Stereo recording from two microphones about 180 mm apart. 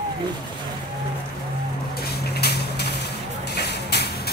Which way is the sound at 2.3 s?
65° left (ahead or behind).